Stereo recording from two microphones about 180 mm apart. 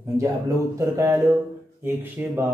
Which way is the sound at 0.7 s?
15° right (ahead or behind).